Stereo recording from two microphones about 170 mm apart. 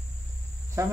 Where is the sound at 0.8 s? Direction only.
15° right (ahead or behind).